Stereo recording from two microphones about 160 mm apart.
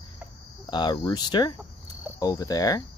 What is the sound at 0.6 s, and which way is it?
Speech, 30° left (ahead or behind).